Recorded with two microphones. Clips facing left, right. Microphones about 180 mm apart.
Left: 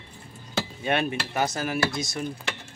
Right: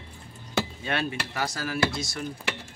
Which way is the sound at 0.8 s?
20° left (ahead or behind).